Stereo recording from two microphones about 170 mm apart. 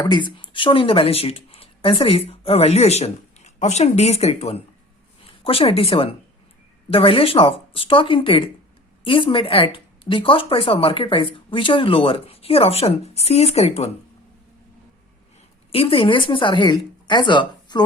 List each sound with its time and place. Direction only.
0.0 s speech: 25° left (ahead or behind)
15.7 s a woman's voice: 35° left (ahead or behind)